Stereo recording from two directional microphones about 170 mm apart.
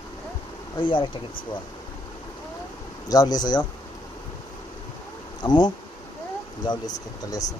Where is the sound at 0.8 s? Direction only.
30° left (ahead or behind).